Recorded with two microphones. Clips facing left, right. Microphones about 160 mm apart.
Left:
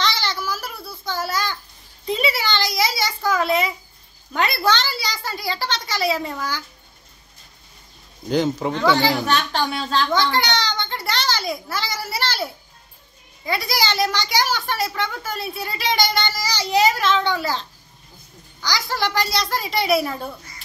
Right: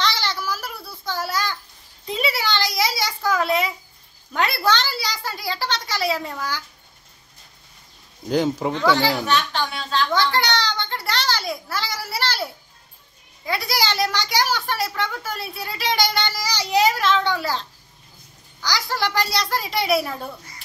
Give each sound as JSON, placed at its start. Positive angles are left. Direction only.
{"t": 0.0, "sound": "a sound", "side_deg": -5}
{"t": 0.8, "sound": "child singing", "side_deg": -10}
{"t": 2.0, "sound": "a sound", "side_deg": -5}
{"t": 3.3, "sound": "a sound", "side_deg": 0}
{"t": 4.6, "sound": "a child's voice", "side_deg": -10}
{"t": 8.3, "sound": "a woman's voice", "side_deg": -5}
{"t": 9.2, "sound": "a woman's voice", "side_deg": 40}
{"t": 10.1, "sound": "a child's voice", "side_deg": -5}
{"t": 13.7, "sound": "a child's voice", "side_deg": -10}